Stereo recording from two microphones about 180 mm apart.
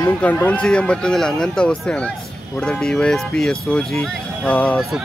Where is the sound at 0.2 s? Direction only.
10° left (ahead or behind).